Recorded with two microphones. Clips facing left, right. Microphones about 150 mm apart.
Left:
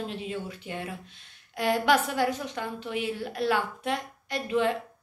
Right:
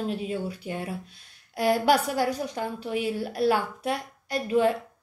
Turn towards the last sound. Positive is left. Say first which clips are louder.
# right 3 dB
turn(degrees=-40)  # may be behind; listen again after turning